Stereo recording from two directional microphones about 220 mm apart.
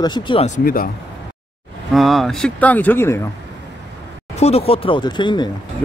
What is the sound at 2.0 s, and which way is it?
Speech, centre (ahead or behind).